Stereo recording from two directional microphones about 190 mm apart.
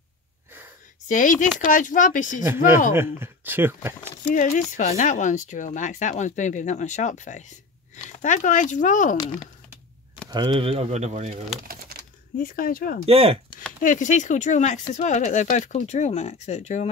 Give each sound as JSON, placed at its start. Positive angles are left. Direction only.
{"t": 1.0, "sound": "speech", "side_deg": 45}
{"t": 2.4, "sound": "speech", "side_deg": -10}
{"t": 4.3, "sound": "speech", "side_deg": 40}
{"t": 10.3, "sound": "speech", "side_deg": -25}
{"t": 11.6, "sound": "pigeon", "side_deg": -50}
{"t": 12.4, "sound": "speech", "side_deg": 45}
{"t": 13.0, "sound": "speech", "side_deg": -30}
{"t": 13.8, "sound": "speech", "side_deg": 40}